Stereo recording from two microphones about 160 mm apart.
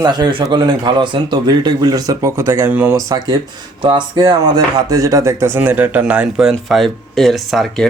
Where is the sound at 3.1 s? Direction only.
25° right (ahead or behind); by 7.9 s centre (ahead or behind).